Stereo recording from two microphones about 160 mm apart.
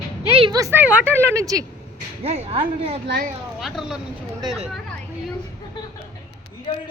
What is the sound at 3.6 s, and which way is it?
Speech, centre (ahead or behind).